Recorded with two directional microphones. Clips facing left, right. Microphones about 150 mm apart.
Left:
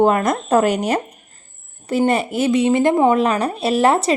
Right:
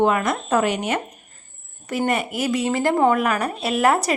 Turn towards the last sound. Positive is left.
turn(degrees=25)  # may be behind; listen again after turning